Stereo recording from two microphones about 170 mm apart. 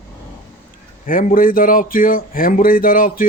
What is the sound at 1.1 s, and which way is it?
Speech, 55° left (ahead or behind).